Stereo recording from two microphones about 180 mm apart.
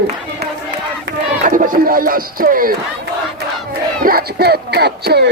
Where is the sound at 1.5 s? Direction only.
45° right (ahead or behind).